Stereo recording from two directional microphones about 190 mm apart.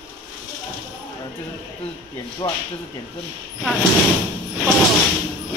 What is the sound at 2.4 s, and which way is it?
Speech, 20° left (ahead or behind).